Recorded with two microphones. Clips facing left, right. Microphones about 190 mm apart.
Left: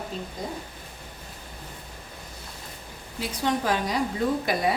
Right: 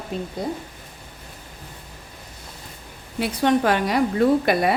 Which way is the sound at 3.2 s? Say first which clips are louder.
Right 7 dB; 65° right (ahead or behind).